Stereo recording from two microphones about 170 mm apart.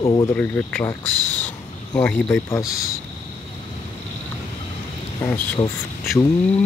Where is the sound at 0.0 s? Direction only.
25° left (ahead or behind).